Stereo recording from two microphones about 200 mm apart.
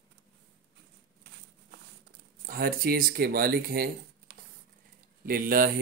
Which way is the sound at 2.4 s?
50° right (ahead or behind).